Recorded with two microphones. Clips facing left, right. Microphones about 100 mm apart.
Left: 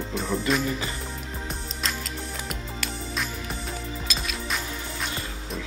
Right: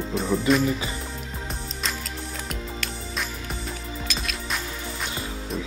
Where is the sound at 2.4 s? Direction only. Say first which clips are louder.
Right 1 dB; centre (ahead or behind).